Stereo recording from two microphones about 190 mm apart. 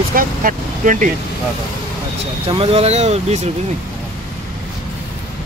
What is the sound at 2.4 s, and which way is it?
Speech, 30° right (ahead or behind).